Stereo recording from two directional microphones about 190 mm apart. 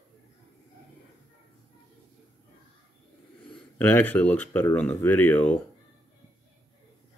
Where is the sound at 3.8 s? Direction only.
10° left (ahead or behind).